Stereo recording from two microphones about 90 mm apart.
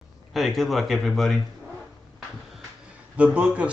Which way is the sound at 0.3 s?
Centre (ahead or behind).